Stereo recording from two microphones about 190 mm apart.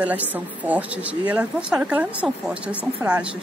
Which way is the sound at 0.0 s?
10° right (ahead or behind).